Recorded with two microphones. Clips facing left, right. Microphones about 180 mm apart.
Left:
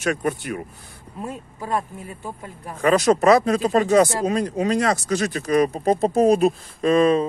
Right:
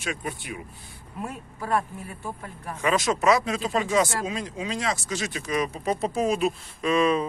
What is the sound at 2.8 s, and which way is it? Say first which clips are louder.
Speech: left 7 dB; 35° left (ahead or behind).